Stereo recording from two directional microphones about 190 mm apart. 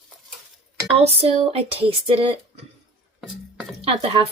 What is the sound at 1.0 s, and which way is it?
A woman's voice, 30° right (ahead or behind).